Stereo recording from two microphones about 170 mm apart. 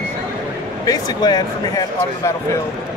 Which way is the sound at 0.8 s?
25° left (ahead or behind).